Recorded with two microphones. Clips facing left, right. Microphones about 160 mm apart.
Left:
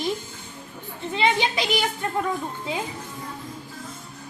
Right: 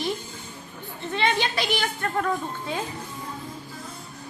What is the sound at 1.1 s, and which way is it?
Speech, 15° left (ahead or behind).